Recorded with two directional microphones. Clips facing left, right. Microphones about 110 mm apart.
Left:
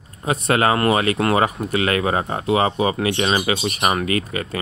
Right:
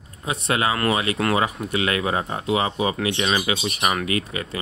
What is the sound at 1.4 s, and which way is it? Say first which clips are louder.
Speech: left 3 dB; 45° left (ahead or behind).